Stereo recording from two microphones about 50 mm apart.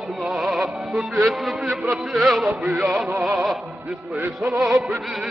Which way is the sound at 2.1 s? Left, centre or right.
Centre.